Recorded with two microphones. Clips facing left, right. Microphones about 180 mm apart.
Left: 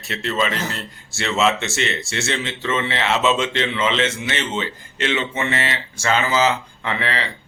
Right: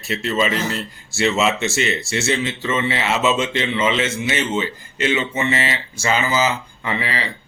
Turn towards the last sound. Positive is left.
turn(degrees=-5)  # may be behind; listen again after turning